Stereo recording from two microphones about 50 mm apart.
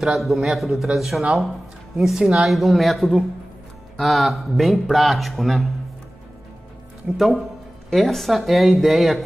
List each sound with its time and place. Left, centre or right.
0.2 s speech: centre
7.1 s speech: right
7.9 s speech: centre